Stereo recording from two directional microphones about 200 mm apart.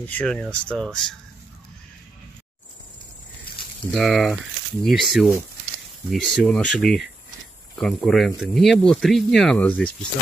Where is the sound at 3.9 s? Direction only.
Centre (ahead or behind).